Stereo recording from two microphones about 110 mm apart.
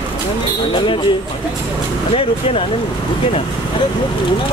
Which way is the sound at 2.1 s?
65° left (ahead or behind).